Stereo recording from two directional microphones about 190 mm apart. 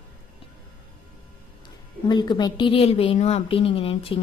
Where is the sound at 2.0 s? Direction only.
25° left (ahead or behind).